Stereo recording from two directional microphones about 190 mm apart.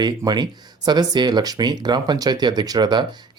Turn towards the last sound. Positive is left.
turn(degrees=-20)  # may be behind; listen again after turning